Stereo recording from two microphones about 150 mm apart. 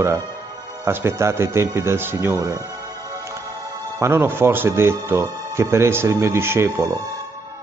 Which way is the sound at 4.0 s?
15° right (ahead or behind).